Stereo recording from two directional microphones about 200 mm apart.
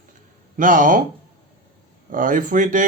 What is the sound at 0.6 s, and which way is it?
Speech, 40° right (ahead or behind).